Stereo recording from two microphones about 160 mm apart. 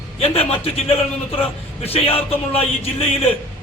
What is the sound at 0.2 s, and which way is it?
A man's voice, 35° left (ahead or behind).